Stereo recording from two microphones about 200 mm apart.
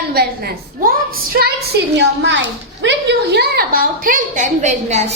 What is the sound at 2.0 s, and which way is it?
A woman's voice, 65° right (ahead or behind).